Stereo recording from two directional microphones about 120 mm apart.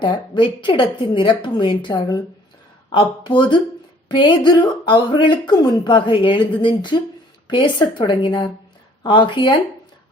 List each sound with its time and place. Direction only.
0.0 s a woman's voice: 40° left (ahead or behind)